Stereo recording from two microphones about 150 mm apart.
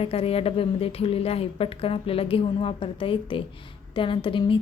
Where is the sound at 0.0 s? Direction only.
40° left (ahead or behind).